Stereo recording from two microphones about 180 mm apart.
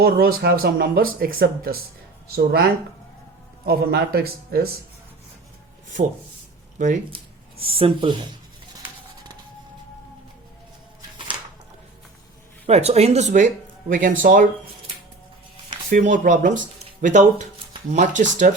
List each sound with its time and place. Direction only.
0.0 s speech: 60° right (ahead or behind)
3.7 s speech: 60° right (ahead or behind)
6.7 s speech: 45° right (ahead or behind)
7.6 s speech: 30° right (ahead or behind)
12.6 s speech: 35° right (ahead or behind)
15.9 s speech: 45° right (ahead or behind)